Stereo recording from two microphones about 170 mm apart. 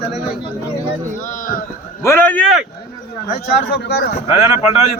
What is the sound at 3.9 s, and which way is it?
Speech, 70° left (ahead or behind).